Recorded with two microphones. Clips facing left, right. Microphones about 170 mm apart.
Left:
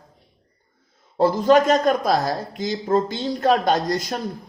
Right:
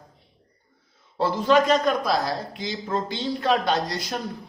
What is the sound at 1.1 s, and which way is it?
A man's voice, 45° left (ahead or behind).